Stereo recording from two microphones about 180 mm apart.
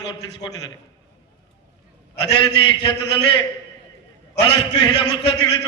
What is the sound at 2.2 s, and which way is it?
A man's voice, 25° left (ahead or behind).